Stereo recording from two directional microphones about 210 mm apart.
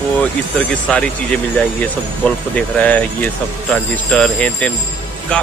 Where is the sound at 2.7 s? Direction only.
5° left (ahead or behind).